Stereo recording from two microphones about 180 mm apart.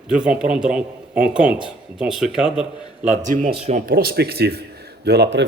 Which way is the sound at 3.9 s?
55° right (ahead or behind).